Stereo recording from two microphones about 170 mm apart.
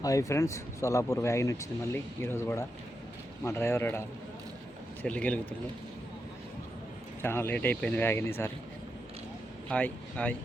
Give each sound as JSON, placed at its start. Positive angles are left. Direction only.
{"t": 0.0, "sound": "speech", "side_deg": 20}
{"t": 5.0, "sound": "speech", "side_deg": 10}
{"t": 7.2, "sound": "speech", "side_deg": 15}
{"t": 9.6, "sound": "speech", "side_deg": 5}